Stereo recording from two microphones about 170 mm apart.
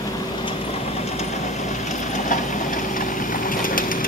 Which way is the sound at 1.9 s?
50° left (ahead or behind).